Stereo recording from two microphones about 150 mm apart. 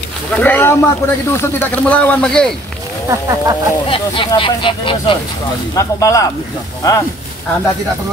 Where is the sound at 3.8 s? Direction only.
35° left (ahead or behind).